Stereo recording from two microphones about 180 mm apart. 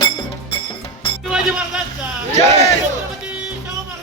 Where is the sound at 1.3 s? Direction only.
5° right (ahead or behind).